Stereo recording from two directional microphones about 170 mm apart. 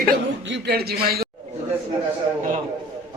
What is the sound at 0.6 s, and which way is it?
Speech, 70° right (ahead or behind).